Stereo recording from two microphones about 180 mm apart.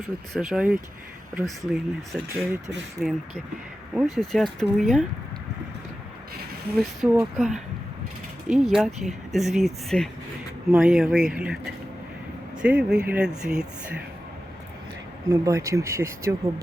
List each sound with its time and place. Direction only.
0.0 s speech: centre (ahead or behind)
3.0 s speech: centre (ahead or behind)
6.7 s speech: centre (ahead or behind)
10.7 s speech: 10° right (ahead or behind)
15.3 s speech: 15° right (ahead or behind)